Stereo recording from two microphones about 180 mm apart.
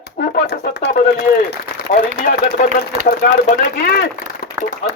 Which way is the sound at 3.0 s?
55° left (ahead or behind).